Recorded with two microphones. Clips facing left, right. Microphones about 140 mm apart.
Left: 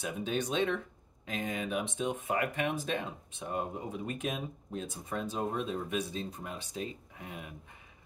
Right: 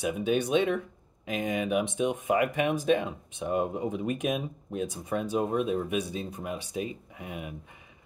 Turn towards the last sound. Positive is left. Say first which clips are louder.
# right 6 dB
turn(degrees=-15)  # may be behind; listen again after turning